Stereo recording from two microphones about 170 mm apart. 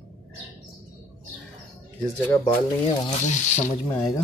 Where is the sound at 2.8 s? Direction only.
45° left (ahead or behind).